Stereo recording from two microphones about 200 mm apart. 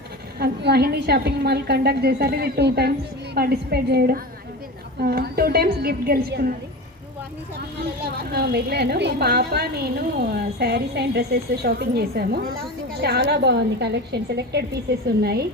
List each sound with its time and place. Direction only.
0.3 s a woman's voice: 55° right (ahead or behind)
8.0 s a woman's voice: 50° right (ahead or behind)